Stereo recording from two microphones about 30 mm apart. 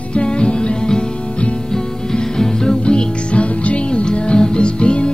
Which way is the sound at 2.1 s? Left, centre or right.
Left.